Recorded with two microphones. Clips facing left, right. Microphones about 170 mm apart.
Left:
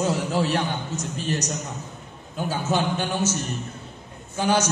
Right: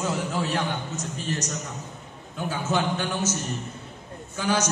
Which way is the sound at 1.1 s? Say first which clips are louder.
Left 4 dB; 75° left (ahead or behind).